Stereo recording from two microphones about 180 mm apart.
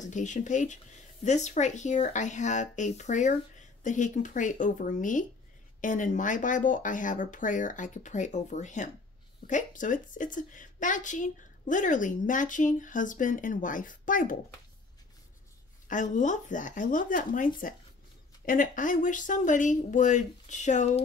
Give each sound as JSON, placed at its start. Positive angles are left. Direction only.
{"t": 0.0, "sound": "a woman's voice", "side_deg": 45}
{"t": 15.9, "sound": "a woman's voice", "side_deg": 45}